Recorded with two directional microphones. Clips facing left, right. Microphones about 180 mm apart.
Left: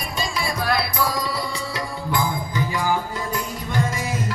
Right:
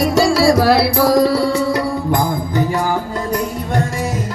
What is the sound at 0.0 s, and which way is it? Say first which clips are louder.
Music: right 15 dB; 90° right.